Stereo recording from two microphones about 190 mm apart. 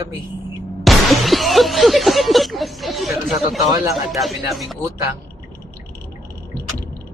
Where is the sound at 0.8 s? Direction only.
Centre (ahead or behind).